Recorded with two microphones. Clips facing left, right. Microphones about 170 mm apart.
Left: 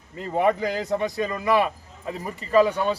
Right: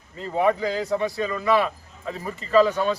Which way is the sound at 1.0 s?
15° left (ahead or behind).